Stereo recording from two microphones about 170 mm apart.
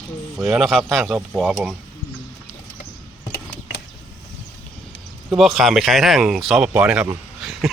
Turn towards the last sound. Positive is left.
turn(degrees=0)  # may be behind; listen again after turning